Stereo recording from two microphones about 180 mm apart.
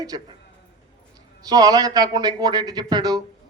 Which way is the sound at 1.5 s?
20° right (ahead or behind).